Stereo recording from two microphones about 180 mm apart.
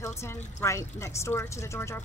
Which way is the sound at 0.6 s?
15° left (ahead or behind).